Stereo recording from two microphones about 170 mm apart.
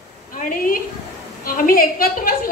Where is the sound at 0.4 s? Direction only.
55° left (ahead or behind).